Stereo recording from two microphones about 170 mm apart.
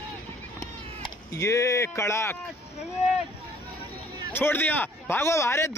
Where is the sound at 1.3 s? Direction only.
15° left (ahead or behind).